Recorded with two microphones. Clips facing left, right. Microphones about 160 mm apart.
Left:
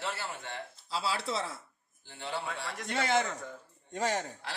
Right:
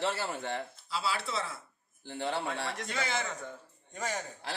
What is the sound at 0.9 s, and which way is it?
Speech, 35° left (ahead or behind).